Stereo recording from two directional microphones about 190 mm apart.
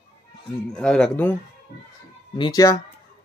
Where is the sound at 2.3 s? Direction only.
20° left (ahead or behind).